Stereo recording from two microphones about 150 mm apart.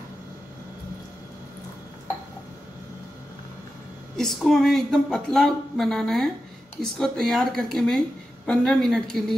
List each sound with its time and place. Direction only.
4.2 s speech: centre (ahead or behind)